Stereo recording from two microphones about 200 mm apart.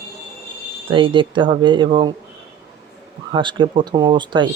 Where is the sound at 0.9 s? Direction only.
25° right (ahead or behind).